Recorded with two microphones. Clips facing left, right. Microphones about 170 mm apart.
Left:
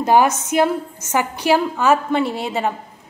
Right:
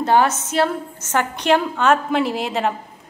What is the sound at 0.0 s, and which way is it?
A woman's voice, 15° left (ahead or behind).